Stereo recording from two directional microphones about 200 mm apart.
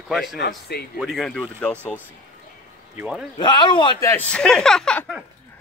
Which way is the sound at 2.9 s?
5° right (ahead or behind).